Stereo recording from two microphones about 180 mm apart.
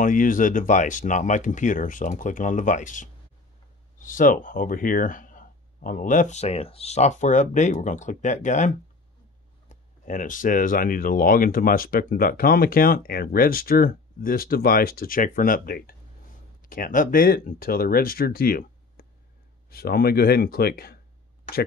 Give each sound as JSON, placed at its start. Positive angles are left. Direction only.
{"t": 0.0, "sound": "speech", "side_deg": 45}